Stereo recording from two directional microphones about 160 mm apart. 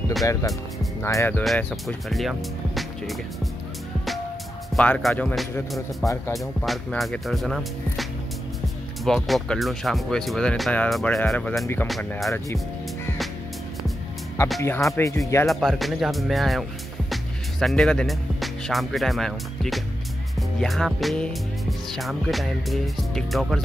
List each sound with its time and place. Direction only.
0.2 s speech: 20° left (ahead or behind)
1.4 s speech: 5° left (ahead or behind)
4.7 s speech: 5° left (ahead or behind)
14.6 s speech: 20° left (ahead or behind)
15.4 s speech: centre (ahead or behind)